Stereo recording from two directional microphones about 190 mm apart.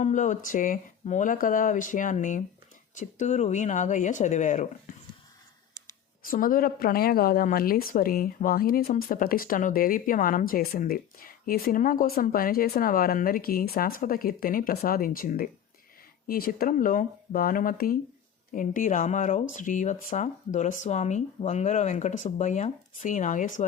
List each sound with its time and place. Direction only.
0.0 s a woman's voice: 40° left (ahead or behind)
6.2 s a woman's voice: 45° left (ahead or behind)